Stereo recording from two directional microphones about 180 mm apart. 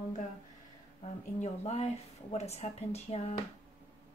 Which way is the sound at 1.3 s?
40° left (ahead or behind).